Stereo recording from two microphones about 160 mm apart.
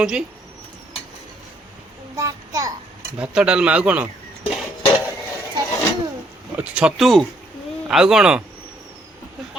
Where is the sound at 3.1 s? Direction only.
5° right (ahead or behind).